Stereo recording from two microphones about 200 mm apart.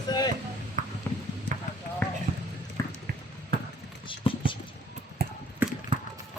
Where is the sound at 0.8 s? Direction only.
40° right (ahead or behind).